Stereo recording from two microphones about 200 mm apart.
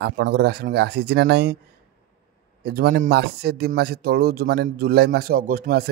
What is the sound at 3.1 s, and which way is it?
Speech, 55° right (ahead or behind).